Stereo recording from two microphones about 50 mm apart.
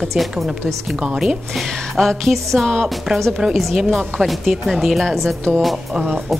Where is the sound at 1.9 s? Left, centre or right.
Centre.